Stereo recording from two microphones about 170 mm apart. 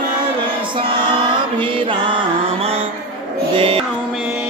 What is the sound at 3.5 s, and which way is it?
Music, 35° right (ahead or behind).